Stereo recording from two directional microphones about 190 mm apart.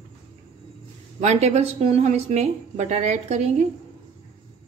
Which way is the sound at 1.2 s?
35° right (ahead or behind).